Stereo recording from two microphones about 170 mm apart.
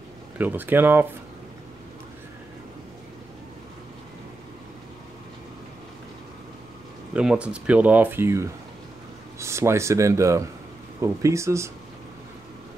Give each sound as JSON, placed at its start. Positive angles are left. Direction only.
{"t": 0.4, "sound": "speech", "side_deg": -10}
{"t": 7.2, "sound": "speech", "side_deg": -5}